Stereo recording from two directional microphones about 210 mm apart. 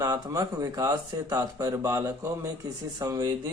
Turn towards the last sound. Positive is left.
turn(degrees=-15)  # may be behind; listen again after turning